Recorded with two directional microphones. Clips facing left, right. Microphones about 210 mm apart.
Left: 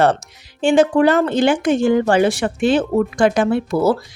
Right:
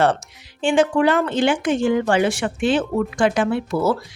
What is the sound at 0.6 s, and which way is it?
Speech, 40° left (ahead or behind).